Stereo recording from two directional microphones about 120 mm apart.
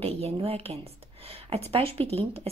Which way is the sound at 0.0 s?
55° right (ahead or behind).